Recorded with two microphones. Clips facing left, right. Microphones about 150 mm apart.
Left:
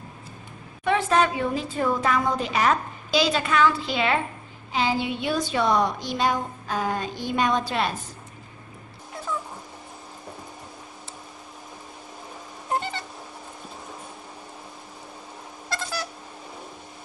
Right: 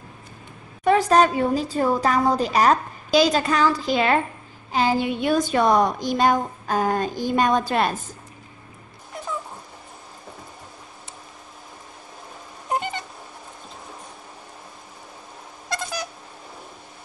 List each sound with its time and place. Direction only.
0.8 s a woman's voice: 40° right (ahead or behind)
12.7 s cat: 15° right (ahead or behind)
15.7 s a sound: 15° right (ahead or behind)